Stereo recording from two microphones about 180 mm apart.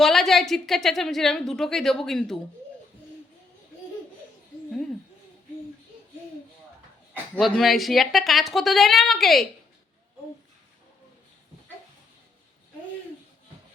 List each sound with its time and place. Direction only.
0.0 s a woman's voice: centre (ahead or behind)
7.3 s a woman's voice: centre (ahead or behind)